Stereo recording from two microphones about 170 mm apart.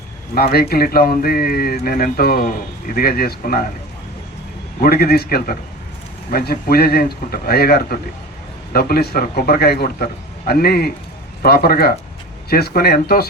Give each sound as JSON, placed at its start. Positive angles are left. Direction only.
{"t": 0.3, "sound": "a man's voice", "side_deg": 65}
{"t": 4.8, "sound": "a man's voice", "side_deg": 65}